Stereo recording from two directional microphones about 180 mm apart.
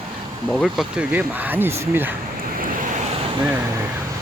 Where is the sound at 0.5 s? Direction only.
Centre (ahead or behind).